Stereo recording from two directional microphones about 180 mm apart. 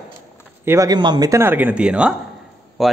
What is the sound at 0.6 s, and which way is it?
A man's voice, 20° right (ahead or behind).